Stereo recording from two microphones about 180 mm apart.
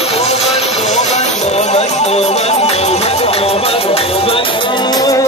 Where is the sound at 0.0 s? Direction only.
35° left (ahead or behind).